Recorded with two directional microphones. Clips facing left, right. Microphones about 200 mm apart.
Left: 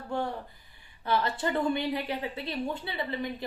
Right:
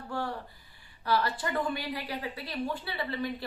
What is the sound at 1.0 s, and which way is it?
A woman's voice, 25° left (ahead or behind).